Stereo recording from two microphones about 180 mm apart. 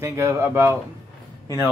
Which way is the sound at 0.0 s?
15° right (ahead or behind).